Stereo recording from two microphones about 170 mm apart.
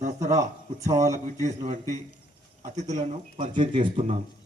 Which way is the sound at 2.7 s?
45° right (ahead or behind).